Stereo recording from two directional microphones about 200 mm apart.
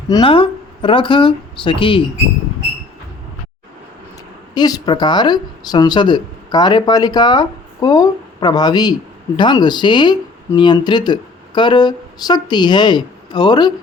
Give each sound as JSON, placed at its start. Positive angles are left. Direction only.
{"t": 0.1, "sound": "speech", "side_deg": 25}
{"t": 4.5, "sound": "speech", "side_deg": 20}